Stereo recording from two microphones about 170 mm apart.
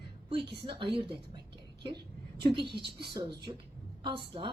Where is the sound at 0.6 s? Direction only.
30° right (ahead or behind).